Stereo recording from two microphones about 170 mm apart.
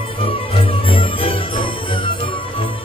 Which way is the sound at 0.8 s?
35° left (ahead or behind).